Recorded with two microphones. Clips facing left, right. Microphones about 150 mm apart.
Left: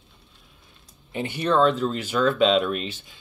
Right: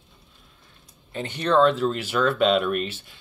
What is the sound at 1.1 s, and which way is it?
Speech, 10° left (ahead or behind).